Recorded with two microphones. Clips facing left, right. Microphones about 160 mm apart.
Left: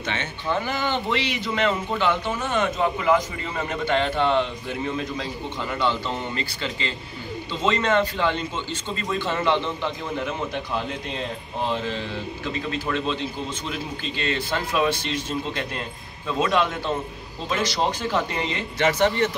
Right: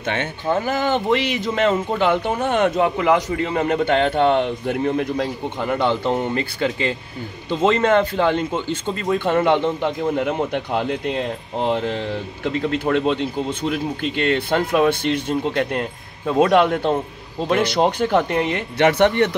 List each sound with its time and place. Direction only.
0.0 s a man's voice: 55° right (ahead or behind)